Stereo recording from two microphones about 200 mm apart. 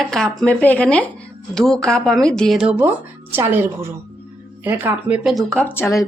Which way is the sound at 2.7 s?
10° right (ahead or behind).